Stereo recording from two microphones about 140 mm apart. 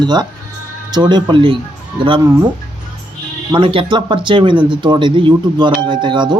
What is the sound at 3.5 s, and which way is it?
Speech, 35° right (ahead or behind).